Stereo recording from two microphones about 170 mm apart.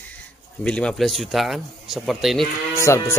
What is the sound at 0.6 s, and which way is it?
A man's voice, 5° left (ahead or behind).